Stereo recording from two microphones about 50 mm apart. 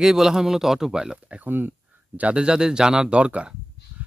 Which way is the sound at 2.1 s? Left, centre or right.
Right.